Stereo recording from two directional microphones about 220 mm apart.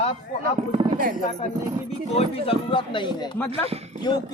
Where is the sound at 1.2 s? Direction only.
35° left (ahead or behind).